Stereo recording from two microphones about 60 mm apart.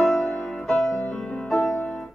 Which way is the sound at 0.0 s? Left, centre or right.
Centre.